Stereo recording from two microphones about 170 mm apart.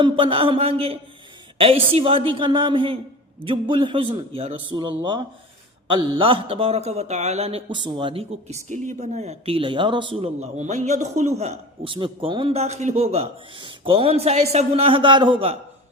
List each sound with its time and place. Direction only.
0.0 s speech: 30° right (ahead or behind)